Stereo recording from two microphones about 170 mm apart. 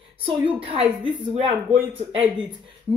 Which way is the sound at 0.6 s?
35° right (ahead or behind).